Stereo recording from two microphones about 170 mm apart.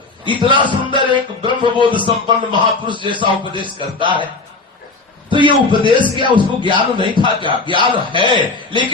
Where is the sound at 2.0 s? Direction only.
25° right (ahead or behind).